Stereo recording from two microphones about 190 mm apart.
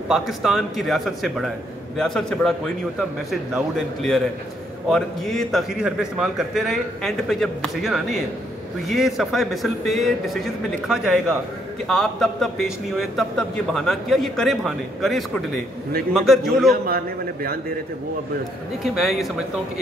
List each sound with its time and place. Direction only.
0.1 s a man's voice: centre (ahead or behind)
16.8 s a man's voice: 50° right (ahead or behind)
18.9 s a man's voice: centre (ahead or behind)